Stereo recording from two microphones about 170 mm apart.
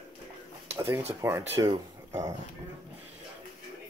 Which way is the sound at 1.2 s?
15° right (ahead or behind).